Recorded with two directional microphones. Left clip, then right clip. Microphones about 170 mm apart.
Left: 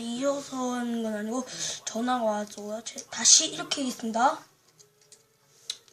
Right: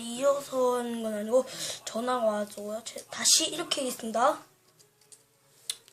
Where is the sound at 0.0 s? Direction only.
25° right (ahead or behind).